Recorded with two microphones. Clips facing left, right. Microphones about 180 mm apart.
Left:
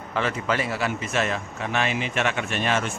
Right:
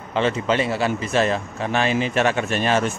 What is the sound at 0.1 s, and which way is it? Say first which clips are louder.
A man's voice: right 5 dB; 25° right (ahead or behind).